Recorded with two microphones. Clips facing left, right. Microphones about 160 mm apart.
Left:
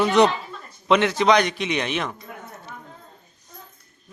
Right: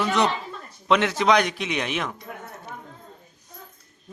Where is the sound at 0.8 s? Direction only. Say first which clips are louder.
Left 2 dB; centre (ahead or behind).